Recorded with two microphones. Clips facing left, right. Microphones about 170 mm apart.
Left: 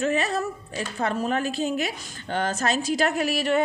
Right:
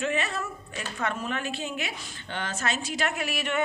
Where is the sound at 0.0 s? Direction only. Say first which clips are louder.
Left 5 dB; 40° left (ahead or behind).